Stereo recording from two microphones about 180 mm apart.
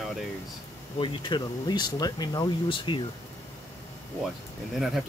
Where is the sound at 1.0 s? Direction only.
25° left (ahead or behind).